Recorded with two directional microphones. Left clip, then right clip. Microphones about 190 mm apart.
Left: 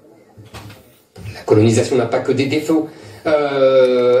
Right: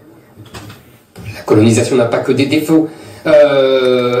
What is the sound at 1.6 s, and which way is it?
A man's voice, 35° right (ahead or behind).